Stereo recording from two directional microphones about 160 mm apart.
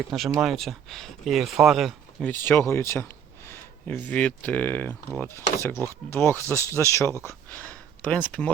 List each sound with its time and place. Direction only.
0.1 s speech: centre (ahead or behind)
2.3 s speech: 15° left (ahead or behind)